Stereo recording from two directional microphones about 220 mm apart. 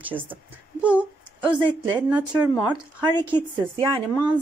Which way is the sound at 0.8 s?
5° right (ahead or behind).